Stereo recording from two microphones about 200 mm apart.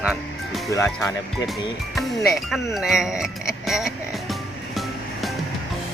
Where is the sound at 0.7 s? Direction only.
15° left (ahead or behind).